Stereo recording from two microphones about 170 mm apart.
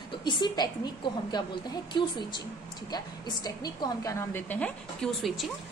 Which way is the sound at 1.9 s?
25° left (ahead or behind).